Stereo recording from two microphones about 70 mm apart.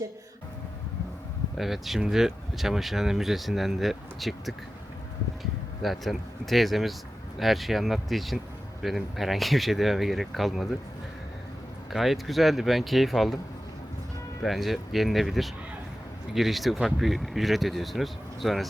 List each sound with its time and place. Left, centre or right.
1.5 s speech: centre
11.9 s speech: centre
14.4 s speech: centre